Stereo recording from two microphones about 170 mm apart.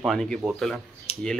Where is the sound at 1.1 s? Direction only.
35° left (ahead or behind).